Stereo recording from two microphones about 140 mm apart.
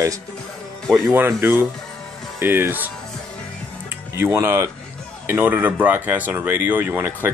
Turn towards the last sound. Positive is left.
turn(degrees=-15)  # may be behind; listen again after turning